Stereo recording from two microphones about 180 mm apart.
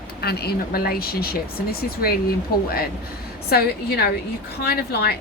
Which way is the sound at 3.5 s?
60° left (ahead or behind).